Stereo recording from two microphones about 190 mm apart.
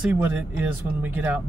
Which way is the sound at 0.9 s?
10° right (ahead or behind).